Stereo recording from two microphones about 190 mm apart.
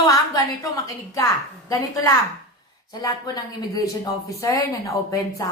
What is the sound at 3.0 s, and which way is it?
Speech, 20° left (ahead or behind).